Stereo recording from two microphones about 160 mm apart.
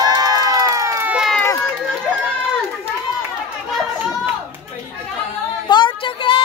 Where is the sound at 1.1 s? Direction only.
5° right (ahead or behind).